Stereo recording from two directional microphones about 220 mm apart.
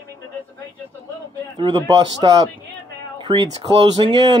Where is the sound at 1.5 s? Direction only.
20° right (ahead or behind).